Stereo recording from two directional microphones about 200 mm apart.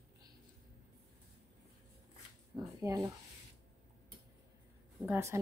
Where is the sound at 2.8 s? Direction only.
15° right (ahead or behind).